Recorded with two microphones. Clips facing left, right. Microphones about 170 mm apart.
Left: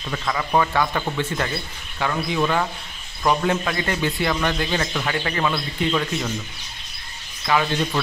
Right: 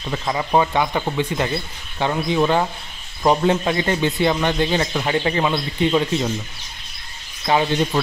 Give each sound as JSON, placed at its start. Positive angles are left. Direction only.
{"t": 0.1, "sound": "a man's voice", "side_deg": -25}
{"t": 2.0, "sound": "a man's voice", "side_deg": -25}
{"t": 7.4, "sound": "a man's voice", "side_deg": -30}